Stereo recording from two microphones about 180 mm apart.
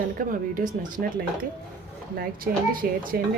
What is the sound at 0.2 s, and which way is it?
Speech, 50° right (ahead or behind).